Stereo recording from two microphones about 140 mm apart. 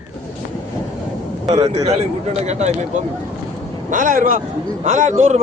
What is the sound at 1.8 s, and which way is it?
A man's voice, 50° right (ahead or behind).